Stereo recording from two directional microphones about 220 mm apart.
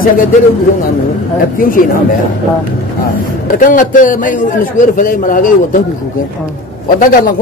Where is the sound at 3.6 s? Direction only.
35° left (ahead or behind).